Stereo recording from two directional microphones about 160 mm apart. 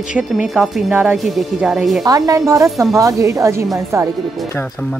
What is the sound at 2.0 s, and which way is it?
Speech, 20° right (ahead or behind).